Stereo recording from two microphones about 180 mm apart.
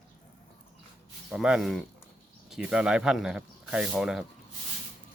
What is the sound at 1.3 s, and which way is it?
Speech, 5° right (ahead or behind).